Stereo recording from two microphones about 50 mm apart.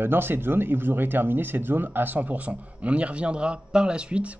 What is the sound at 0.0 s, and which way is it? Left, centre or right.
Speech, right.